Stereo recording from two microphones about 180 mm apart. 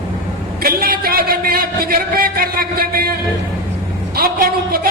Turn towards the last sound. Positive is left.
turn(degrees=-55)  # may be behind; listen again after turning